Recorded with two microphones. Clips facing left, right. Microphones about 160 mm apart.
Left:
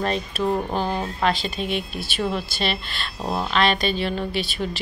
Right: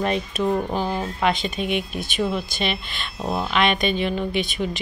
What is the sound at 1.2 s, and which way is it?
Speech, 15° right (ahead or behind).